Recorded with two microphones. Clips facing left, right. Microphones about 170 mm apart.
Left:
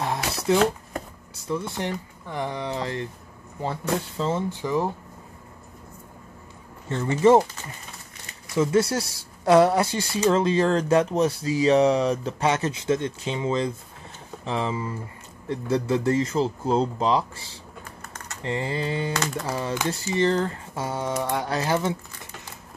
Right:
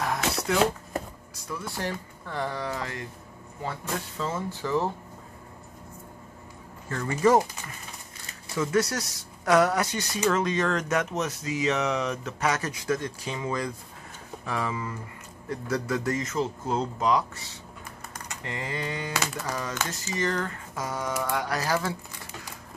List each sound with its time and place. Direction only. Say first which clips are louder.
0.0 s a sound: left 1 dB; 30° left (ahead or behind)
1.5 s speech: left 5 dB; 20° left (ahead or behind)
4.2 s speech: left 5 dB; 25° left (ahead or behind)
6.9 s speech: left 4 dB; 25° left (ahead or behind)
17.8 s typing: right 2 dB; 15° right (ahead or behind)
18.4 s speech: left 6 dB; 30° left (ahead or behind)